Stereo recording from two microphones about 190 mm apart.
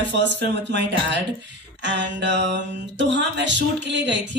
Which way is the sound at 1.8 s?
65° right (ahead or behind).